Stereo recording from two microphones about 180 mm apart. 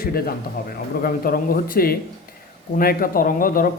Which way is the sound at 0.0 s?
55° left (ahead or behind).